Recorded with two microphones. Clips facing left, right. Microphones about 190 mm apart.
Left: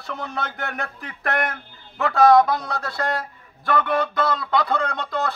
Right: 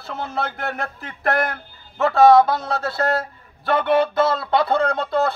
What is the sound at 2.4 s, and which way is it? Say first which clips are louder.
A man's voice: right 2 dB; 30° right (ahead or behind).